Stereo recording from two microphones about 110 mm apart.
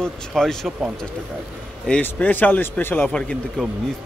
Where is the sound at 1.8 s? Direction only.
15° left (ahead or behind).